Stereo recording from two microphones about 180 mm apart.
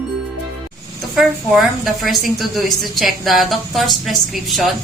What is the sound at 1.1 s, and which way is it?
A woman's voice, centre (ahead or behind).